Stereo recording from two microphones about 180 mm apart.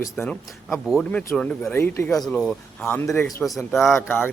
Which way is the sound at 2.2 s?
Centre (ahead or behind).